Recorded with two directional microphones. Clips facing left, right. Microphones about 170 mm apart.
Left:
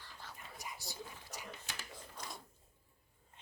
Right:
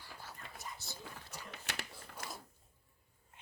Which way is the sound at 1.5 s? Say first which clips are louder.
Right 2 dB; 70° right (ahead or behind).